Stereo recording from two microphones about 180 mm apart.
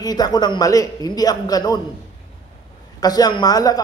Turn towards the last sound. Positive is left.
turn(degrees=20)  # may be behind; listen again after turning